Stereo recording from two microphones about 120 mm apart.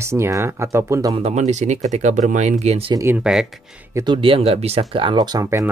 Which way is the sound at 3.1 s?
5° right (ahead or behind).